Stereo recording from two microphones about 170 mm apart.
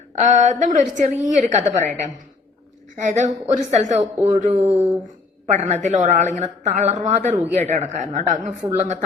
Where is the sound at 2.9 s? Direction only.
45° right (ahead or behind).